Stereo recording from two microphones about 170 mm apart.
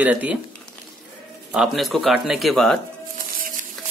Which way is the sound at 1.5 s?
Centre (ahead or behind).